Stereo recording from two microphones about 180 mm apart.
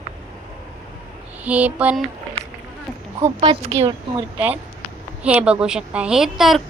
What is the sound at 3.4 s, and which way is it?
Speech, 30° right (ahead or behind).